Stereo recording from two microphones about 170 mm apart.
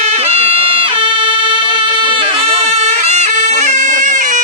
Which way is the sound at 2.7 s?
40° right (ahead or behind).